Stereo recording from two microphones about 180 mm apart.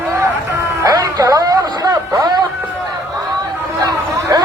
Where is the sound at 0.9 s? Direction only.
20° right (ahead or behind).